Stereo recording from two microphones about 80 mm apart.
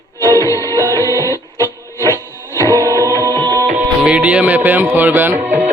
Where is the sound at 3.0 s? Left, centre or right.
Right.